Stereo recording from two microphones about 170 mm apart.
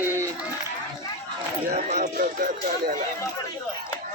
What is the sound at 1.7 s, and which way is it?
Speech, 45° right (ahead or behind).